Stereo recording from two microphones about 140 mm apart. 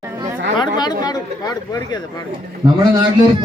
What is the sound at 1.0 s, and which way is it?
Speech, 25° left (ahead or behind).